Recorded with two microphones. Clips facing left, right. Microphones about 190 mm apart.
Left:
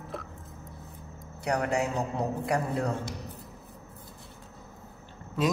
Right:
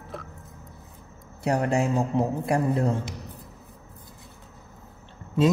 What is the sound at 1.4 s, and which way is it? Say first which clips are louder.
A man's voice: right 4 dB; 30° right (ahead or behind).